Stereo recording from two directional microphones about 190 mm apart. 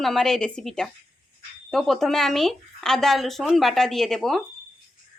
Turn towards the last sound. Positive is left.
turn(degrees=0)  # may be behind; listen again after turning